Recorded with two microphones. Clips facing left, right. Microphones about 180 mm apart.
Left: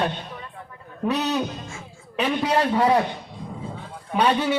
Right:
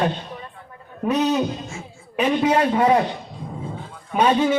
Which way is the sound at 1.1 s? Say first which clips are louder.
Right 6 dB; 20° right (ahead or behind).